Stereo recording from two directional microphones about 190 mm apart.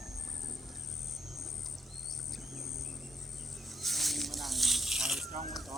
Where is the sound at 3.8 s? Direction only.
Centre (ahead or behind).